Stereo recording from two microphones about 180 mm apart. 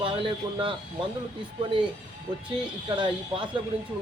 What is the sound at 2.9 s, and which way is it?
Speech, 25° right (ahead or behind).